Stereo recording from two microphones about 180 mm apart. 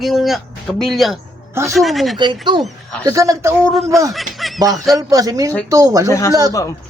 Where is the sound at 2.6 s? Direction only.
5° left (ahead or behind).